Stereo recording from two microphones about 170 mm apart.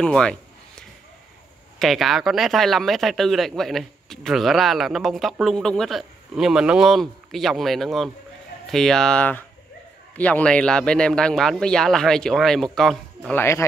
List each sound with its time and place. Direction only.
0.0 s a sound: 5° left (ahead or behind)
1.8 s speech: centre (ahead or behind)
13.4 s speech: 15° left (ahead or behind)